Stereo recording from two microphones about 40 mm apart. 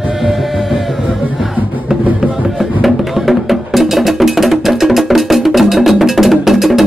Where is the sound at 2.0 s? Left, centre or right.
Right.